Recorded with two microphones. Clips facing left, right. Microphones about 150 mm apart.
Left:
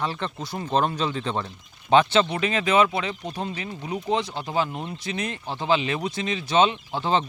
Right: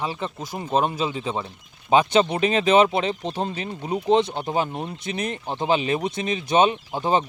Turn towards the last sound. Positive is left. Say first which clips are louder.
# right 2 dB
turn(degrees=-15)  # may be behind; listen again after turning